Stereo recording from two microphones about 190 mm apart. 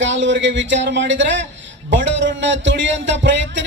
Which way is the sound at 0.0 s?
75° right (ahead or behind).